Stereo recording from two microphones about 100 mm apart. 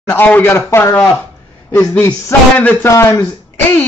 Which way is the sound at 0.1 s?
20° left (ahead or behind).